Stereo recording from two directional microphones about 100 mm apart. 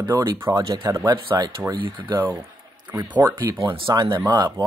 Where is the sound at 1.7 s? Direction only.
50° right (ahead or behind).